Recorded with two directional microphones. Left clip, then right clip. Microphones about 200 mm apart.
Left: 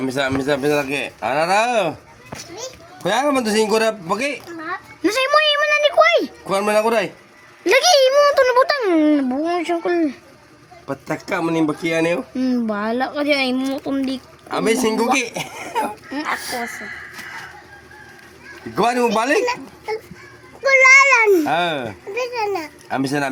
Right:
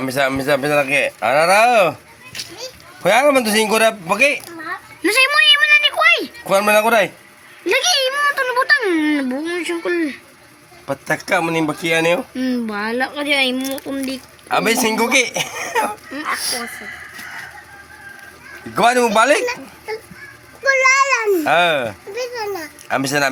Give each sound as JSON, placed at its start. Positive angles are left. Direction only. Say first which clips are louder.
{"t": 0.0, "sound": "speech", "louder": "right 2 dB", "side_deg": -25}
{"t": 3.0, "sound": "speech", "louder": "right 5 dB", "side_deg": -30}
{"t": 5.0, "sound": "a sound", "louder": "right 3 dB", "side_deg": 35}
{"t": 6.4, "sound": "speech", "louder": "right 4 dB", "side_deg": -30}
{"t": 7.6, "sound": "speech", "louder": "left 3 dB", "side_deg": 55}
{"t": 10.8, "sound": "speech", "louder": "right 5 dB", "side_deg": -30}
{"t": 12.3, "sound": "speech", "louder": "left 1 dB", "side_deg": 40}
{"t": 14.4, "sound": "speech", "louder": "right 2 dB", "side_deg": -25}
{"t": 16.1, "sound": "speech", "louder": "left 2 dB", "side_deg": 60}
{"t": 18.7, "sound": "speech", "louder": "right 3 dB", "side_deg": -10}
{"t": 20.7, "sound": "a sound", "louder": "left 3 dB", "side_deg": 30}
{"t": 21.4, "sound": "speech", "louder": "right 5 dB", "side_deg": -5}
{"t": 22.4, "sound": "a child's voice", "louder": "left 3 dB", "side_deg": 25}
{"t": 22.9, "sound": "speech", "louder": "right 4 dB", "side_deg": -5}